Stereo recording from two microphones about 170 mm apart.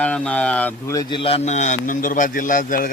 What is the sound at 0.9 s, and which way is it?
A man's voice, 25° left (ahead or behind).